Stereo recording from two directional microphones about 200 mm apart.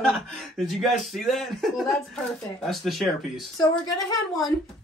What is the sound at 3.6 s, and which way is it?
Speech, 15° left (ahead or behind).